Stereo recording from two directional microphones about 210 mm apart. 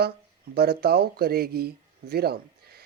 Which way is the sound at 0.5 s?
50° right (ahead or behind).